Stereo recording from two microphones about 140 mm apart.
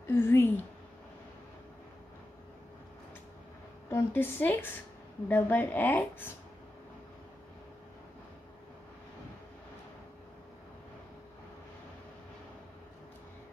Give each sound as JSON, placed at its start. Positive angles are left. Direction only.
{"t": 0.1, "sound": "a woman's voice", "side_deg": 15}
{"t": 3.9, "sound": "a woman's voice", "side_deg": 15}